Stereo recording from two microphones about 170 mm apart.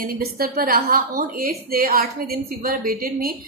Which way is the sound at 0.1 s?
60° right (ahead or behind).